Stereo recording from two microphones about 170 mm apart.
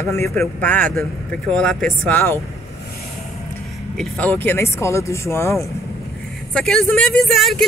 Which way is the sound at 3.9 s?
10° left (ahead or behind).